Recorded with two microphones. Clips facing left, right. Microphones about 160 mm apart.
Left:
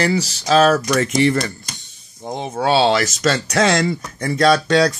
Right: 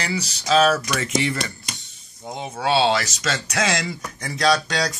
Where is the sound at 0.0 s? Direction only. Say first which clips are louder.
Left 8 dB; 45° left (ahead or behind).